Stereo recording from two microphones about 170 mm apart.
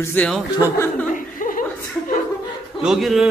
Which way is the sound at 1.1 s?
55° left (ahead or behind).